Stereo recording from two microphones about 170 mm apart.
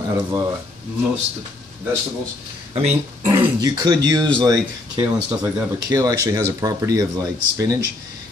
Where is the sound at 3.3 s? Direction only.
25° right (ahead or behind).